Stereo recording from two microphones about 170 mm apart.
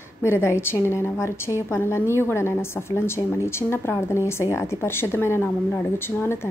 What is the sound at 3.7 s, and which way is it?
A woman's voice, 15° left (ahead or behind).